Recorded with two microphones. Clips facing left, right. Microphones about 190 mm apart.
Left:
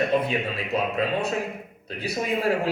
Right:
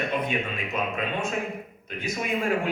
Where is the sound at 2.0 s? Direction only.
35° left (ahead or behind).